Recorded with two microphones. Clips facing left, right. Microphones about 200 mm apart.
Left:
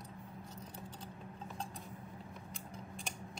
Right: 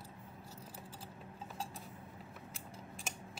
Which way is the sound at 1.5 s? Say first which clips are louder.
Right 1 dB; 5° right (ahead or behind).